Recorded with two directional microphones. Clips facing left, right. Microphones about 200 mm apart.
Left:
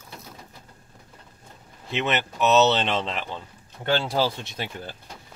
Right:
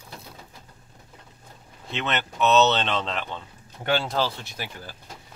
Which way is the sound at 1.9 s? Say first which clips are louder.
Left 3 dB; 10° left (ahead or behind).